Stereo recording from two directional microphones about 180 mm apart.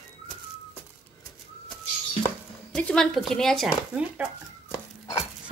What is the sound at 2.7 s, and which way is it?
Speech, 5° left (ahead or behind).